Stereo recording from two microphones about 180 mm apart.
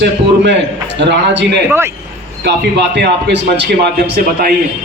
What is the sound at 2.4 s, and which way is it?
Speech, 70° right (ahead or behind).